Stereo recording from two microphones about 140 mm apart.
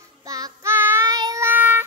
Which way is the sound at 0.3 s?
20° right (ahead or behind).